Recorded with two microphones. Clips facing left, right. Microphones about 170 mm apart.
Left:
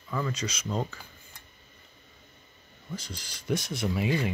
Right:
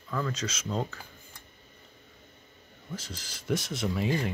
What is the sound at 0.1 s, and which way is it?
Speech, centre (ahead or behind).